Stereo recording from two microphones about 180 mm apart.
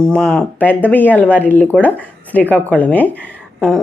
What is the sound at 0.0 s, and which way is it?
A woman's voice, 5° left (ahead or behind).